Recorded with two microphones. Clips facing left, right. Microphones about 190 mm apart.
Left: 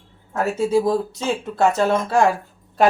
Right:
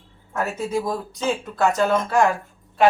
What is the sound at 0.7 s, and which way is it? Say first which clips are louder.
Speech: left 6 dB; 30° left (ahead or behind).